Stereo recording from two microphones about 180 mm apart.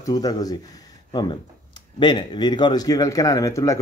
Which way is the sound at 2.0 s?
25° left (ahead or behind).